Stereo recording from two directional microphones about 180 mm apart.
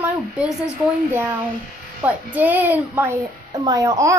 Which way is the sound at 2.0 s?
10° right (ahead or behind).